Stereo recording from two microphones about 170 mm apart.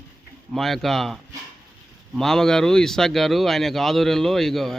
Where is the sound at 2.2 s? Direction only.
5° left (ahead or behind).